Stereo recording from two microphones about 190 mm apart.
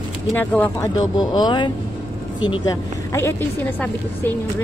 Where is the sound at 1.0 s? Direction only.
20° left (ahead or behind).